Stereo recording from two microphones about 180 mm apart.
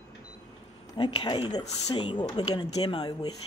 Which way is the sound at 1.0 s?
25° left (ahead or behind).